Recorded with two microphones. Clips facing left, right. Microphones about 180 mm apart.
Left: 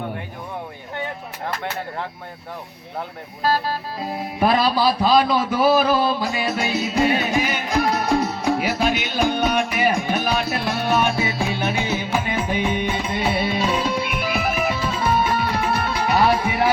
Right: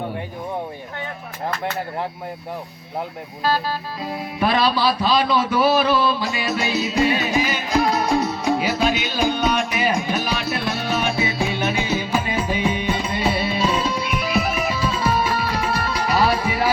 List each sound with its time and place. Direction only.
3.4 s a man's voice: 45° left (ahead or behind)
8.2 s music: 55° left (ahead or behind)